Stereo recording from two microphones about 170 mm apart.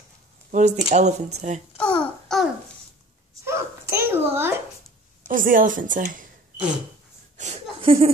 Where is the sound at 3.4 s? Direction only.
15° right (ahead or behind).